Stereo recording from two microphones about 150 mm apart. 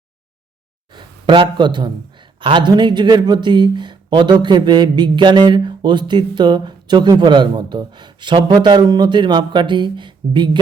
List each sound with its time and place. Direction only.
0.9 s speech: 30° right (ahead or behind)